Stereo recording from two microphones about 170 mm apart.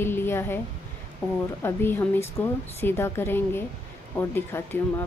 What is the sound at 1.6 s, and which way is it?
A woman's voice, 10° left (ahead or behind).